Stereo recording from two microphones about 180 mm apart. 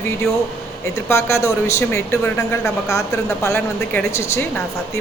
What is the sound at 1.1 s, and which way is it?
Speech, 15° left (ahead or behind).